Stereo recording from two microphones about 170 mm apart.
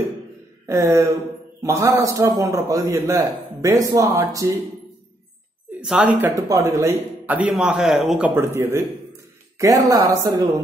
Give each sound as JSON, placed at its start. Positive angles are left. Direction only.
{"t": 0.7, "sound": "a man's voice", "side_deg": -15}
{"t": 5.8, "sound": "a man's voice", "side_deg": -5}
{"t": 8.4, "sound": "a man's voice", "side_deg": -15}